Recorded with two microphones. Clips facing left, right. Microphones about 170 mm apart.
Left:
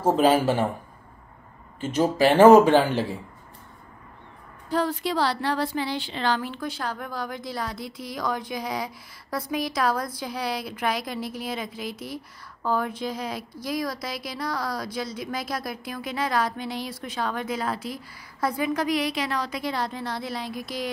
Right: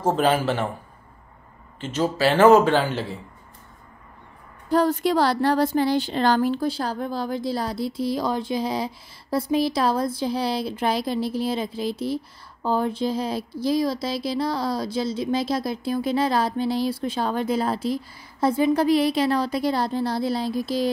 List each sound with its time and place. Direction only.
0.0 s speech: 10° left (ahead or behind)
1.8 s speech: 10° left (ahead or behind)
4.6 s speech: 45° right (ahead or behind)